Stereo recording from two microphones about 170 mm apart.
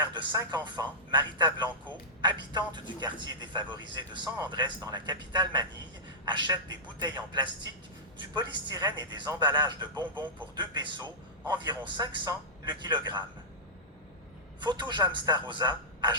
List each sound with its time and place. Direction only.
0.1 s a man's voice: 25° right (ahead or behind)
14.6 s a man's voice: 25° right (ahead or behind)